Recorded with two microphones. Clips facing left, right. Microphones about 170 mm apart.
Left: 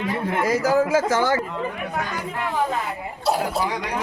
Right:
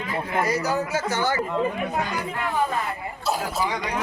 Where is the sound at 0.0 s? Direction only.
85° left.